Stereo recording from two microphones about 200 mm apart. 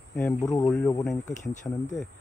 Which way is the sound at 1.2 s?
40° left (ahead or behind).